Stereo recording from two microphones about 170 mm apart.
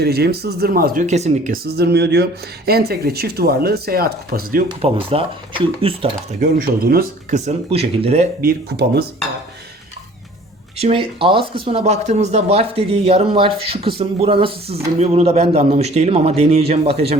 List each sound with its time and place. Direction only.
0.0 s speech: 70° right (ahead or behind)
1.0 s speech: 40° right (ahead or behind)
1.6 s speech: 70° right (ahead or behind)
4.7 s speech: 30° right (ahead or behind)
6.4 s speech: 55° right (ahead or behind)
7.3 s speech: 40° right (ahead or behind)
8.4 s speech: 65° right (ahead or behind)
10.8 s speech: 35° right (ahead or behind)